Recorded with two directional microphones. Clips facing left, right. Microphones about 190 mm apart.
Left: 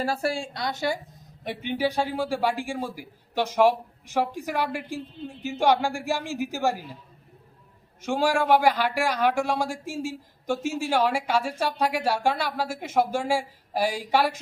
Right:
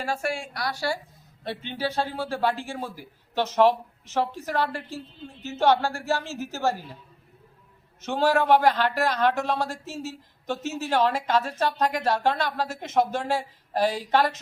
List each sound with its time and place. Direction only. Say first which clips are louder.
0.0 s a woman's voice: left 2 dB; 35° left (ahead or behind); by 6.8 s 15° left (ahead or behind)
8.0 s speech: right 1 dB; 10° left (ahead or behind)